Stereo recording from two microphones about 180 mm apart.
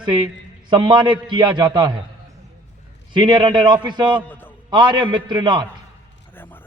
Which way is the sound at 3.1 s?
25° right (ahead or behind).